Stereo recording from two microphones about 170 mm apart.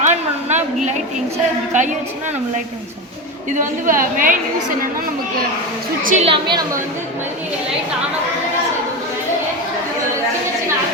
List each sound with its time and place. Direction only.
0.0 s a sound: 45° right (ahead or behind)
1.7 s a woman's voice: 45° right (ahead or behind)
3.6 s a woman's voice: 50° right (ahead or behind)
6.0 s a woman's voice: 50° right (ahead or behind)
6.2 s a woman's voice: 30° right (ahead or behind)